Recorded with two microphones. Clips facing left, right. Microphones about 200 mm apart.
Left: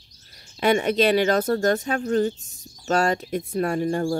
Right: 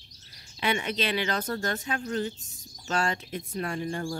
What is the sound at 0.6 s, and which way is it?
Speech, 45° left (ahead or behind).